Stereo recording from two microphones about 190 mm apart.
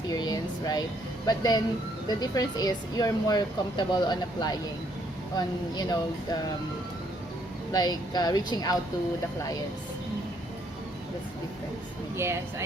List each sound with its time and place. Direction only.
0.1 s speech: 20° left (ahead or behind)
7.7 s speech: 20° left (ahead or behind)
12.1 s speech: 15° right (ahead or behind)